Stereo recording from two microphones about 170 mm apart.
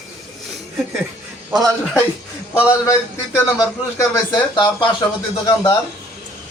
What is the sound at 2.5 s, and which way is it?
Speech, 15° left (ahead or behind).